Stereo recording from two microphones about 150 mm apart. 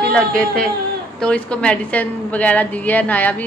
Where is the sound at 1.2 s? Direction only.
10° left (ahead or behind).